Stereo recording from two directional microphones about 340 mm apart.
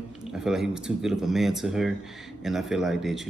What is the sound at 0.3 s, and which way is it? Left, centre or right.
A man's voice, centre.